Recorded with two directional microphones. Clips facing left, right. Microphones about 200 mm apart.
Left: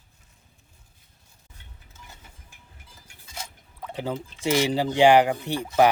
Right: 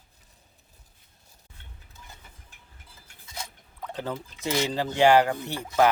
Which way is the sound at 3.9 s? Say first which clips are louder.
Left 3 dB; 10° left (ahead or behind).